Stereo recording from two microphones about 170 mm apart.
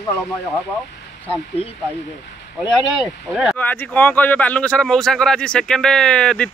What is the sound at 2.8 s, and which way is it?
Speech, 30° left (ahead or behind).